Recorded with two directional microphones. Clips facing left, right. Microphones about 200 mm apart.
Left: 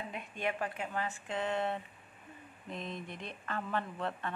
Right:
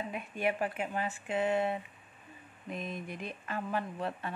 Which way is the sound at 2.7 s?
25° left (ahead or behind).